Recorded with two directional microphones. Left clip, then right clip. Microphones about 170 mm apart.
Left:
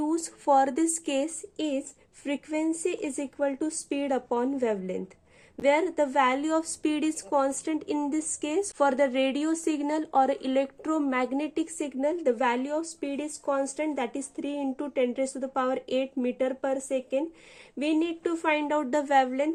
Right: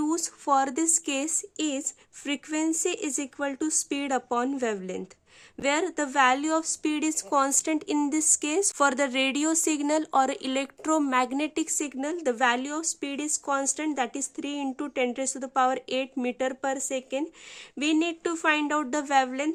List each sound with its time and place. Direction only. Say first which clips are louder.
0.0 s a sound: right 1 dB; 40° right (ahead or behind)
0.4 s speech: left 2 dB; 25° right (ahead or behind)
7.3 s speech: right 2 dB; 40° right (ahead or behind)